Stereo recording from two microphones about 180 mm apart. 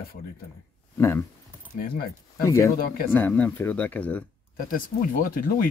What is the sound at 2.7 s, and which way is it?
Speech, 55° left (ahead or behind).